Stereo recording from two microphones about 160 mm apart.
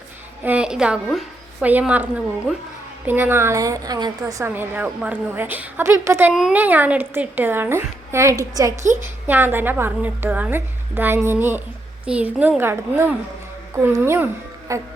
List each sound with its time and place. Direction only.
0.4 s a woman's voice: 5° right (ahead or behind)
14.7 s music: 20° right (ahead or behind)